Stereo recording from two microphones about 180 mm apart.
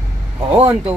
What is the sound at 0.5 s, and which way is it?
Speech, 10° right (ahead or behind).